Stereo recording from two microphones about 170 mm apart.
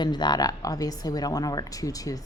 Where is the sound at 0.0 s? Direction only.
25° left (ahead or behind).